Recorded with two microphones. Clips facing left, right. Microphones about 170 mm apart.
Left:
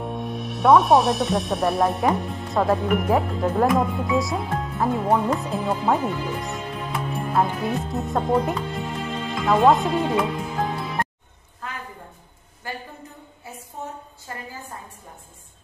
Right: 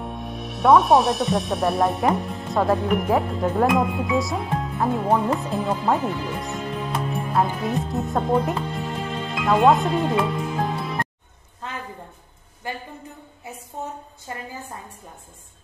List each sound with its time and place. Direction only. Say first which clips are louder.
0.0 s speech: left 3 dB; centre (ahead or behind)
10.2 s music: right 1 dB; centre (ahead or behind)
12.6 s a woman's voice: right 2 dB; 20° right (ahead or behind)